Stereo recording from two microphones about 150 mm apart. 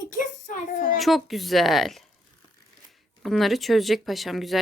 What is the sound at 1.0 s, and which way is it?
Speech, centre (ahead or behind).